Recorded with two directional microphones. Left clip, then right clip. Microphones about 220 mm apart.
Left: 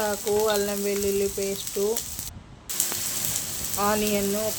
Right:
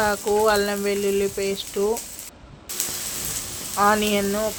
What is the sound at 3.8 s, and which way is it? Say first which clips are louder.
Frying: right 6 dB; 15° right (ahead or behind).